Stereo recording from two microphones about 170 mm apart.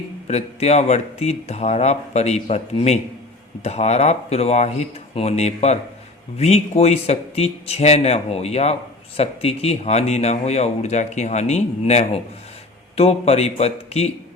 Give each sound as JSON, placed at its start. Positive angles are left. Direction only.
{"t": 0.3, "sound": "speech", "side_deg": 40}